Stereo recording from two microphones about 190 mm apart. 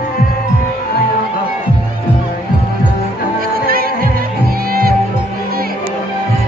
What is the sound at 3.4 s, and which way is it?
Music, 50° right (ahead or behind).